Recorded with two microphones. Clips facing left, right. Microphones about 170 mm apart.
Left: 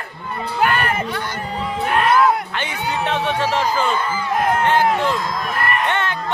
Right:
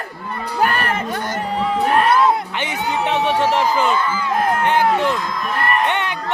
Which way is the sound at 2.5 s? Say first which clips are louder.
Right 2 dB; 15° right (ahead or behind).